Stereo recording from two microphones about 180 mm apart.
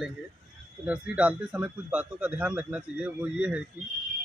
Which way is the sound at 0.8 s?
5° right (ahead or behind).